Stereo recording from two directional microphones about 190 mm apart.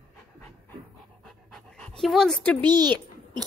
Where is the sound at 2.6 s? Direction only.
25° right (ahead or behind).